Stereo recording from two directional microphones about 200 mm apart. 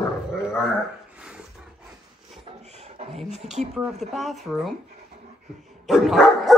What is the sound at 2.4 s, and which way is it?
Beatboxing, 30° right (ahead or behind).